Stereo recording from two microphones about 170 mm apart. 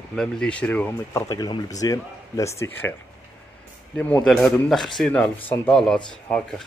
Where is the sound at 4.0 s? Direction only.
10° left (ahead or behind).